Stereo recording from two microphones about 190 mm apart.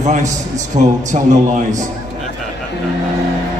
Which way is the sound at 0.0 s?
40° right (ahead or behind).